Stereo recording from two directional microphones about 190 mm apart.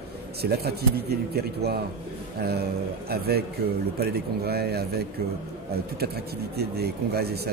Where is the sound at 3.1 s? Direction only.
55° right (ahead or behind).